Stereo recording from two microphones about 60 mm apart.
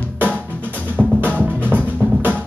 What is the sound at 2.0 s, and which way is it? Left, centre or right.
Music, right.